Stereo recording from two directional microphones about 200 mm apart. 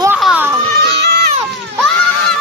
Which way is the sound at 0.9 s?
55° right (ahead or behind).